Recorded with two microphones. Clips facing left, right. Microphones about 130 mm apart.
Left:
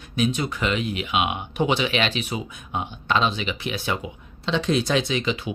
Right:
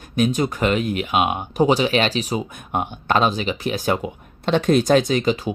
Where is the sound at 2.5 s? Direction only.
55° right (ahead or behind).